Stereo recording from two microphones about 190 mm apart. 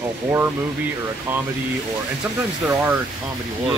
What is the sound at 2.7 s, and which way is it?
Speech, 10° right (ahead or behind).